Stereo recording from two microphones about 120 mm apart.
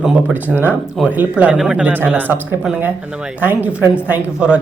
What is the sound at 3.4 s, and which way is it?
Speech, 15° right (ahead or behind).